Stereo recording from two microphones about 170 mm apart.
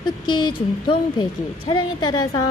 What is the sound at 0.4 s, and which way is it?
A woman's voice, 25° left (ahead or behind).